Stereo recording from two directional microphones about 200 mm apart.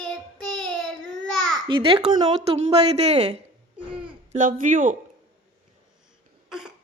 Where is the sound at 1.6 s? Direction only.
25° right (ahead or behind); by 5.0 s 40° right (ahead or behind).